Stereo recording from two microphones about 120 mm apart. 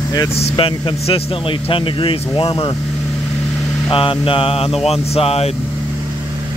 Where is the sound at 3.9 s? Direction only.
45° left (ahead or behind).